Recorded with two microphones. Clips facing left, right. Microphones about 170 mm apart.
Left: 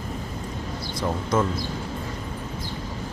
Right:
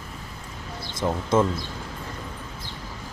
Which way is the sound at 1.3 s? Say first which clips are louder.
Right 3 dB; 25° right (ahead or behind).